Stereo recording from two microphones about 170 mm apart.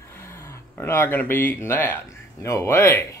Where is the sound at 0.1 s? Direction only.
15° left (ahead or behind).